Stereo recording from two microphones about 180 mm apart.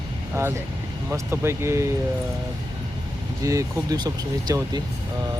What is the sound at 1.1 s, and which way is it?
Speech, 15° right (ahead or behind).